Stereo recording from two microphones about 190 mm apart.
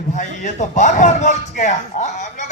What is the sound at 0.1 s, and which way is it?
Speech, 40° left (ahead or behind).